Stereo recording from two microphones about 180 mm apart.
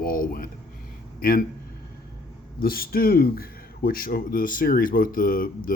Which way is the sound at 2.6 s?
55° left (ahead or behind).